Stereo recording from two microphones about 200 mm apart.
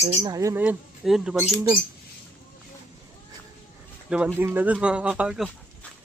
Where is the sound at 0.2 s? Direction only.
20° right (ahead or behind).